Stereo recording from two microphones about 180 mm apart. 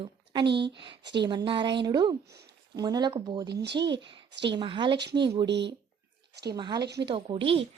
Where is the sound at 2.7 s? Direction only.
25° right (ahead or behind).